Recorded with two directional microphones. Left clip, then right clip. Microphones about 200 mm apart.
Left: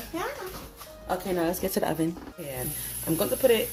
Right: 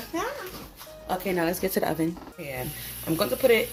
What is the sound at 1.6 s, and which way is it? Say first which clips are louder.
Speech: right 1 dB; 10° right (ahead or behind).